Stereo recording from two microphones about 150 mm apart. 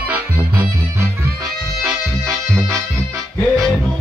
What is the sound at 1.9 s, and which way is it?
Music, 25° right (ahead or behind).